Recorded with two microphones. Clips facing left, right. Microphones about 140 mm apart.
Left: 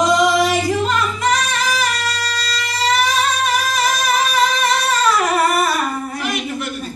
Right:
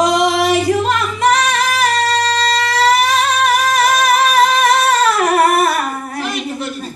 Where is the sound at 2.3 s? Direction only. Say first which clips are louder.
Right 9 dB; 65° right (ahead or behind).